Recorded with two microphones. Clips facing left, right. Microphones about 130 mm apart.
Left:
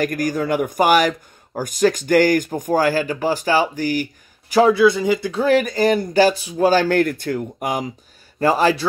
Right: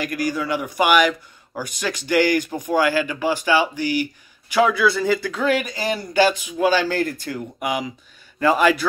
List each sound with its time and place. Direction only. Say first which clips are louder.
0.0 s speech: left 3 dB; 45° left (ahead or behind)